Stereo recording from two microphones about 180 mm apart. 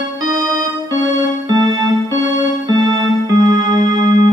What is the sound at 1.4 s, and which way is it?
Music, 20° right (ahead or behind).